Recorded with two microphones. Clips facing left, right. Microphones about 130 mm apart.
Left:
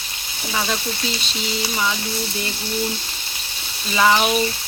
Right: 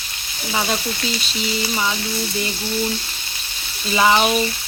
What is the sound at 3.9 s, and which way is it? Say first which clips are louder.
Speech: right 1 dB; 15° right (ahead or behind).